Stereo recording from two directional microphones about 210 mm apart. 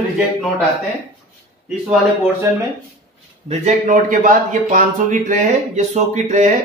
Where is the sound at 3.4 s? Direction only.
30° right (ahead or behind).